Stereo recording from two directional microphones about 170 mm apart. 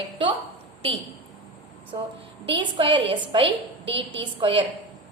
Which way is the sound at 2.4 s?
30° right (ahead or behind).